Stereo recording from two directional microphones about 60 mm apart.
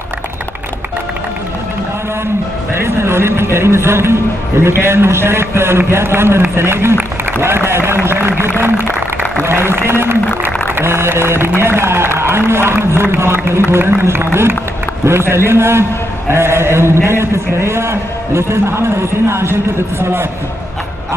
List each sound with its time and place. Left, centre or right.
2.7 s a man's voice: right